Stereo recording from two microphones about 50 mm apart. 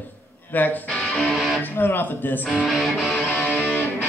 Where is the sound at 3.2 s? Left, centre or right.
Left.